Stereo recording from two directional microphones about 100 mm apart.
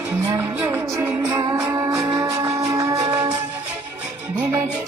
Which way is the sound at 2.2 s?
30° right (ahead or behind).